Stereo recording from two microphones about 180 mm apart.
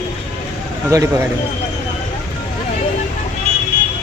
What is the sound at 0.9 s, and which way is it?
Speech, 20° right (ahead or behind).